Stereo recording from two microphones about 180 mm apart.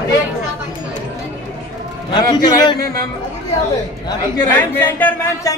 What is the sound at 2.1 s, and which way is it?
Speech, 25° left (ahead or behind).